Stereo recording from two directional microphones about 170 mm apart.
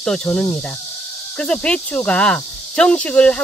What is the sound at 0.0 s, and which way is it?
Speech, 5° left (ahead or behind).